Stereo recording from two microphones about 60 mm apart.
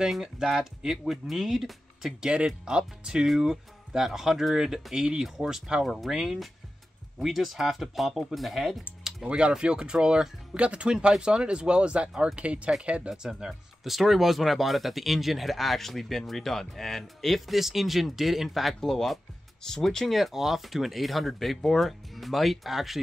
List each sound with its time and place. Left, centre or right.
0.0 s speech: centre
9.0 s speech: centre
13.1 s speech: centre